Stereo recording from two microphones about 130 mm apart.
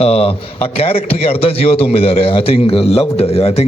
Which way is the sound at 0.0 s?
50° left (ahead or behind).